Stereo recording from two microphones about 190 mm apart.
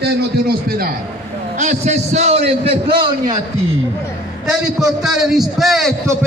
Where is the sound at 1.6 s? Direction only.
40° right (ahead or behind).